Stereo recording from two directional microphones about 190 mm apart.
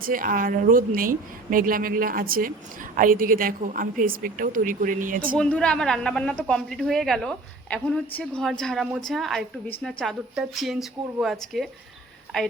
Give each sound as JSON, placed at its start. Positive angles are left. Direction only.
{"t": 0.0, "sound": "a woman's voice", "side_deg": -50}
{"t": 5.4, "sound": "a woman's voice", "side_deg": 5}